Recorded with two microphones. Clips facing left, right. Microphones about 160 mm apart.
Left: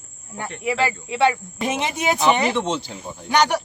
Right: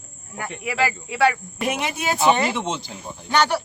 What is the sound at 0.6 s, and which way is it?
A woman's voice, 25° left (ahead or behind).